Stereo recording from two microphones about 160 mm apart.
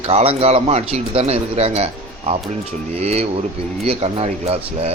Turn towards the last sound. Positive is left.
turn(degrees=-40)  # may be behind; listen again after turning